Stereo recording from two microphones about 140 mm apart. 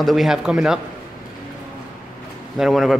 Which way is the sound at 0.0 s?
Centre (ahead or behind).